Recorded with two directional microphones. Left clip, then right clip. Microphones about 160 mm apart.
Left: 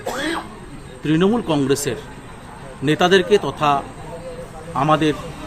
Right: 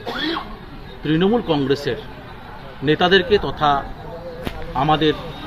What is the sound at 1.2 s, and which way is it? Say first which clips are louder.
A man's voice: right 1 dB; 10° left (ahead or behind).